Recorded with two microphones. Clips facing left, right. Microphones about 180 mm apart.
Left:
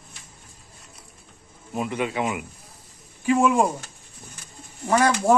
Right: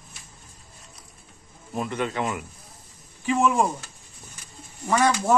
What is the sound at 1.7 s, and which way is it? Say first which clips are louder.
A man's voice: left 1 dB; 5° left (ahead or behind).